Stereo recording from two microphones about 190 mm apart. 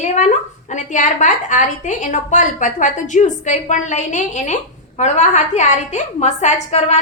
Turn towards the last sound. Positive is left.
turn(degrees=35)  # may be behind; listen again after turning